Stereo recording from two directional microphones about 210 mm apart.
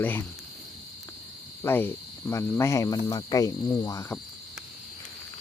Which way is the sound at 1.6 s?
10° left (ahead or behind).